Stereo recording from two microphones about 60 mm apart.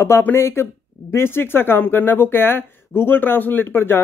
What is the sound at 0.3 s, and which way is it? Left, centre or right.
Speech, left.